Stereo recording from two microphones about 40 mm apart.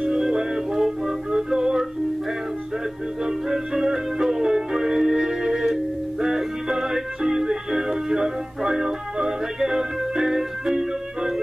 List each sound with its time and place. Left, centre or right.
0.0 s music: centre
3.3 s music: centre